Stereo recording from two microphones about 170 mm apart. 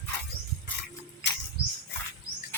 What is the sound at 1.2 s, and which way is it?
Cricket, 90° left.